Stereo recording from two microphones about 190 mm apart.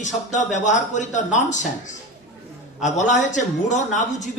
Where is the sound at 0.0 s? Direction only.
40° left (ahead or behind).